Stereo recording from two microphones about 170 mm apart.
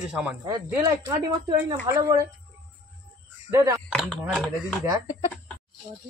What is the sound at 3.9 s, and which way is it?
Speech, centre (ahead or behind).